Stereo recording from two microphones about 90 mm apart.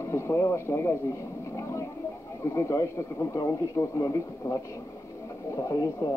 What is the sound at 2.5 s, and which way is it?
Speech, 35° left (ahead or behind).